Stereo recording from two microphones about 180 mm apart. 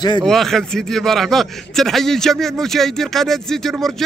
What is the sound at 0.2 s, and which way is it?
A man's voice, centre (ahead or behind).